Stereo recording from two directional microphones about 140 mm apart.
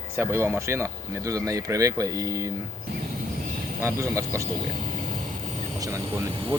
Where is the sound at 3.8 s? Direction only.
20° right (ahead or behind).